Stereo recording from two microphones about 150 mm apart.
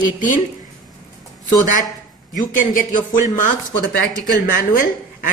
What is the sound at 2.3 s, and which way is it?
Speech, 60° left (ahead or behind).